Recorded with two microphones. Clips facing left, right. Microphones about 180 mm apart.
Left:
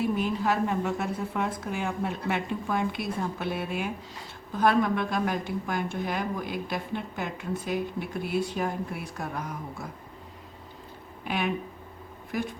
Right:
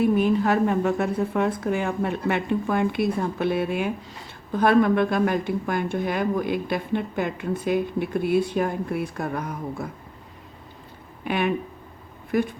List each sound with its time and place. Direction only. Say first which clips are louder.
0.2 s speech: right 6 dB; 60° right (ahead or behind)
11.3 s speech: right 5 dB; 60° right (ahead or behind)